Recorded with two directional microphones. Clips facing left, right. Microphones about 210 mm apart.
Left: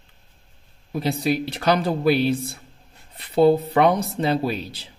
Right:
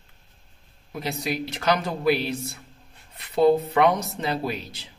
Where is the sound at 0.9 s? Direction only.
30° left (ahead or behind).